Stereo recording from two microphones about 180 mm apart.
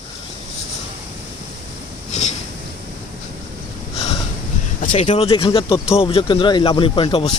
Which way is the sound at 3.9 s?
35° left (ahead or behind).